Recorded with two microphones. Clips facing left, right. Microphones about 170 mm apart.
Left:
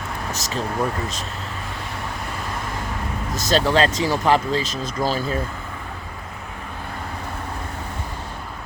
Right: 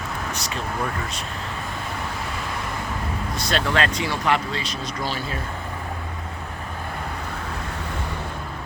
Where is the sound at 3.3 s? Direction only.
40° left (ahead or behind).